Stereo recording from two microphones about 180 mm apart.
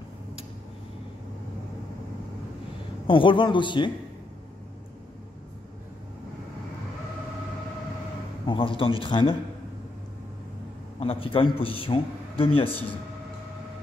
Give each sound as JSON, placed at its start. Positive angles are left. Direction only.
{"t": 3.1, "sound": "a man's voice", "side_deg": 30}
{"t": 8.5, "sound": "a man's voice", "side_deg": 30}
{"t": 11.0, "sound": "a man's voice", "side_deg": 30}